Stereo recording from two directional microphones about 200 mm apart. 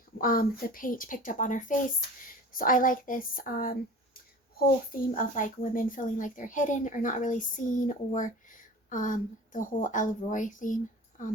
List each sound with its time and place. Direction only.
0.2 s speech: 45° left (ahead or behind)